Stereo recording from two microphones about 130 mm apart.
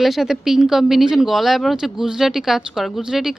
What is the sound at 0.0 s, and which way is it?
Speech, centre (ahead or behind).